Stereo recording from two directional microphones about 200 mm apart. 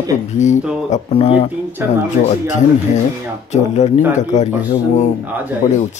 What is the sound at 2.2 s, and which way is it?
Speech, 45° left (ahead or behind).